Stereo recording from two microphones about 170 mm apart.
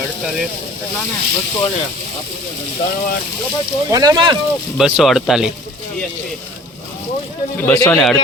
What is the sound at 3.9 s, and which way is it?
Speech, 20° right (ahead or behind).